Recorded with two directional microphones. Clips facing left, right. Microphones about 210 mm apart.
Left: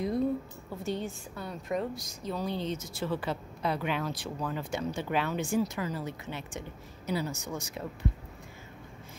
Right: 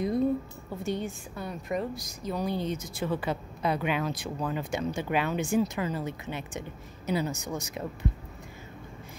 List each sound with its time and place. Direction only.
0.8 s a woman's voice: 15° right (ahead or behind)